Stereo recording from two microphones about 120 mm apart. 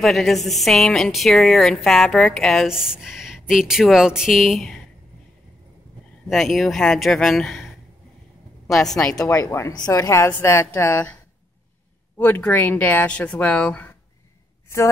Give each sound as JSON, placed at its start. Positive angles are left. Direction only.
{"t": 0.0, "sound": "a woman's voice", "side_deg": 0}
{"t": 6.2, "sound": "a woman's voice", "side_deg": 0}
{"t": 9.1, "sound": "a woman's voice", "side_deg": 25}
{"t": 12.2, "sound": "speech", "side_deg": 15}